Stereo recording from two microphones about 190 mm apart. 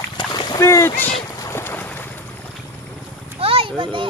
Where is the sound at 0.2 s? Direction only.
25° left (ahead or behind).